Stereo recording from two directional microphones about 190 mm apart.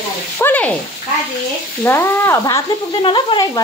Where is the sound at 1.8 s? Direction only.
15° left (ahead or behind).